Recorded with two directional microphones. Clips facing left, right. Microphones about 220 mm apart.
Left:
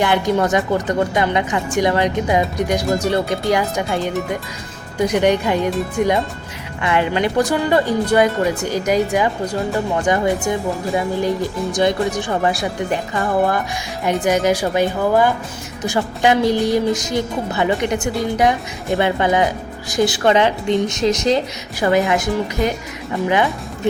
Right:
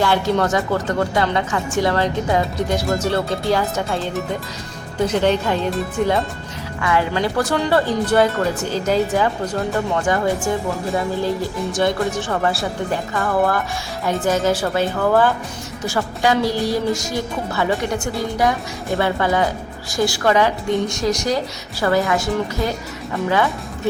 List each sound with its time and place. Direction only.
0.0 s speech: 15° left (ahead or behind)
2.8 s speech: centre (ahead or behind)
3.1 s speech: 15° left (ahead or behind)
4.9 s speech: 15° left (ahead or behind)
10.2 s speech: centre (ahead or behind)
12.1 s a woman's voice: 15° left (ahead or behind)